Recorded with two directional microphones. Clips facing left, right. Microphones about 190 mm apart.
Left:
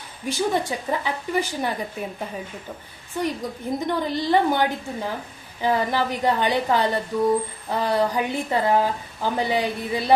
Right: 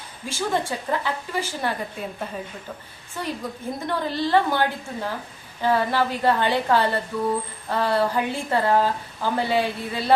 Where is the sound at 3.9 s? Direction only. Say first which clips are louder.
Right 1 dB; 15° left (ahead or behind).